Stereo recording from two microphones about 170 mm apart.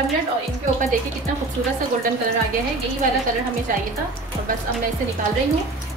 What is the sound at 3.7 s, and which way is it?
Speech, 50° right (ahead or behind).